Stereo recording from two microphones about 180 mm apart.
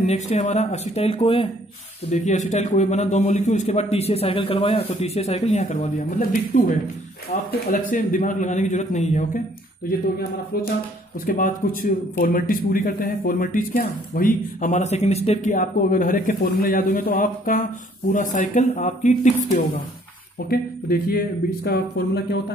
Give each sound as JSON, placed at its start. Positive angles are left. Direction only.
{"t": 0.0, "sound": "a man's voice", "side_deg": 40}
{"t": 2.0, "sound": "a man's voice", "side_deg": 40}
{"t": 11.2, "sound": "a man's voice", "side_deg": 50}
{"t": 20.4, "sound": "speech", "side_deg": 55}